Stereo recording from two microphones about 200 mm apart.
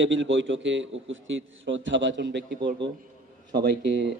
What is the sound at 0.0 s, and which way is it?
A man's voice, 70° right (ahead or behind).